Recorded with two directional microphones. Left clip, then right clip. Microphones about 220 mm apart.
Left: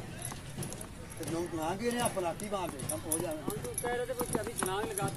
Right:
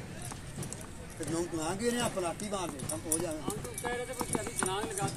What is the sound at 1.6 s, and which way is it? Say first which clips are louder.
Speech: left 1 dB; 50° right (ahead or behind).